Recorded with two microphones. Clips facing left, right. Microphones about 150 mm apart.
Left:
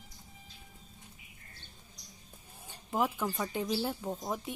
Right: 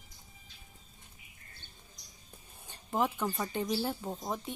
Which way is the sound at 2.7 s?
5° left (ahead or behind).